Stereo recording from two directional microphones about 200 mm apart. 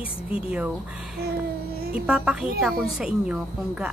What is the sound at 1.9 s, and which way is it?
A woman's voice, 5° right (ahead or behind).